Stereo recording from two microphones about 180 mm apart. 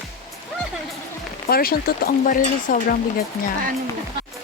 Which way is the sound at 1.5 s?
55° left (ahead or behind).